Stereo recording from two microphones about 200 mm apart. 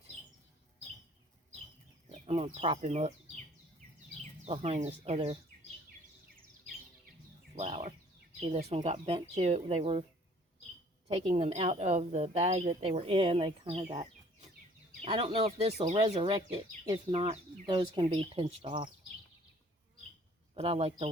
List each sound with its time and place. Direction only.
2.0 s speech: 30° right (ahead or behind)
4.4 s speech: 30° right (ahead or behind)
7.5 s bird: 30° right (ahead or behind)
8.7 s speech: 30° right (ahead or behind)
11.1 s speech: 30° right (ahead or behind)
20.5 s speech: 30° right (ahead or behind)